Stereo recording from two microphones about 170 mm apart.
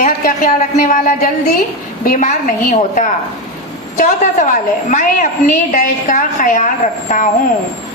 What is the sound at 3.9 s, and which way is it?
A woman's voice, 50° left (ahead or behind).